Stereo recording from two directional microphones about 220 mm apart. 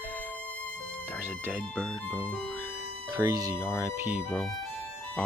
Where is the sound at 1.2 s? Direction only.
10° right (ahead or behind).